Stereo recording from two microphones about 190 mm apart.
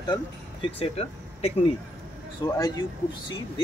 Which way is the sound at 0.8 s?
30° left (ahead or behind).